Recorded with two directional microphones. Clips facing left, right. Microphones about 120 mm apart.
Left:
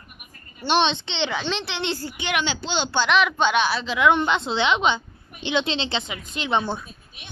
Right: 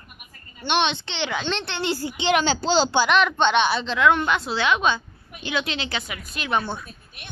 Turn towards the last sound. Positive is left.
turn(degrees=20)  # may be behind; listen again after turning